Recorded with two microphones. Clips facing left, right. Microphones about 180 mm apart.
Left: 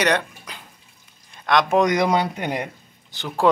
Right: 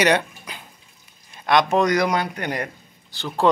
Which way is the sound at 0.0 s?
5° right (ahead or behind).